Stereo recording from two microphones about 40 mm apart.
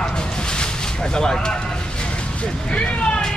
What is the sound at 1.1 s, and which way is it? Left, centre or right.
Speech, centre.